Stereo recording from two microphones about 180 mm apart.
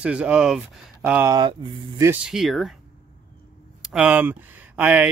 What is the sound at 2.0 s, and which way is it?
Speech, 5° right (ahead or behind).